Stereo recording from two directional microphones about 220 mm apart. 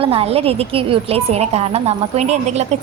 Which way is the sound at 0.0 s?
25° right (ahead or behind).